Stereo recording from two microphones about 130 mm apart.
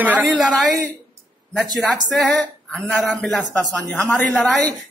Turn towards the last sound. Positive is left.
turn(degrees=0)  # may be behind; listen again after turning